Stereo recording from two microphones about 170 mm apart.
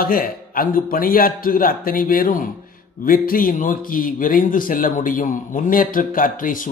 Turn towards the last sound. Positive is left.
turn(degrees=55)  # may be behind; listen again after turning